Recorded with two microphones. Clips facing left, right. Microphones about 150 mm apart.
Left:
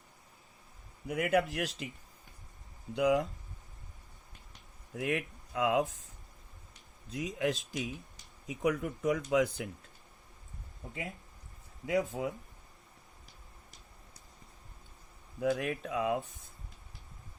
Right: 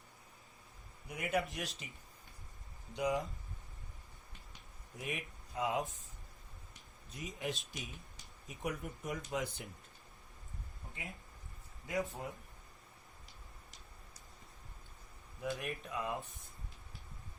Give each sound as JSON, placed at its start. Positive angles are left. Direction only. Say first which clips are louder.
{"t": 1.0, "sound": "speech", "louder": "left 7 dB", "side_deg": 90}
{"t": 2.9, "sound": "speech", "louder": "left 7 dB", "side_deg": 90}
{"t": 4.9, "sound": "speech", "louder": "left 9 dB", "side_deg": 90}
{"t": 7.1, "sound": "speech", "louder": "left 9 dB", "side_deg": 90}
{"t": 11.9, "sound": "speech", "louder": "left 7 dB", "side_deg": 90}
{"t": 15.4, "sound": "speech", "louder": "left 9 dB", "side_deg": 90}